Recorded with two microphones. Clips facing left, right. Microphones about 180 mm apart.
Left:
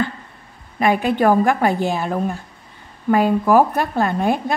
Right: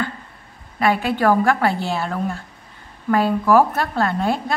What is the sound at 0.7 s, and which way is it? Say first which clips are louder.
A woman's voice: left 2 dB; 20° left (ahead or behind).